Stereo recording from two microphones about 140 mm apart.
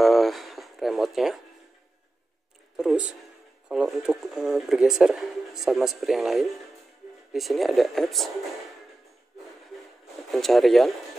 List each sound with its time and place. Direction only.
0.0 s a sound: centre (ahead or behind)
2.8 s speech: 5° right (ahead or behind)
10.3 s speech: centre (ahead or behind)